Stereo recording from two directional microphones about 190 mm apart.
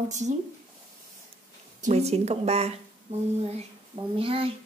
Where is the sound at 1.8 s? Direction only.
35° right (ahead or behind).